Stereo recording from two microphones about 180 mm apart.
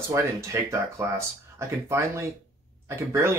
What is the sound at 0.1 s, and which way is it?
Speech, 15° right (ahead or behind).